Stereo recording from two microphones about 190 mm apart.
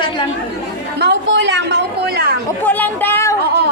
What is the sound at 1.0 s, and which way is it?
A woman's voice, 65° right (ahead or behind).